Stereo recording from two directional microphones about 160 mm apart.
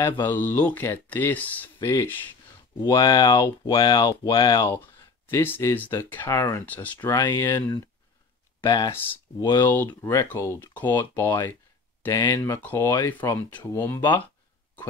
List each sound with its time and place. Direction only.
0.2 s speech: 15° left (ahead or behind); by 4.6 s 30° left (ahead or behind)
4.6 s speech: 15° left (ahead or behind)
7.2 s speech: 25° left (ahead or behind)
12.5 s speech: 15° left (ahead or behind)